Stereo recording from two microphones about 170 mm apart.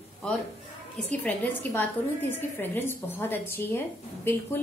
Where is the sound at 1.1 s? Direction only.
10° left (ahead or behind).